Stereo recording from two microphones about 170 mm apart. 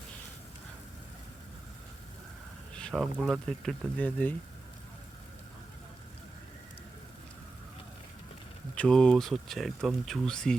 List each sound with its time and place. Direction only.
2.7 s speech: 5° left (ahead or behind)
8.7 s speech: 5° left (ahead or behind)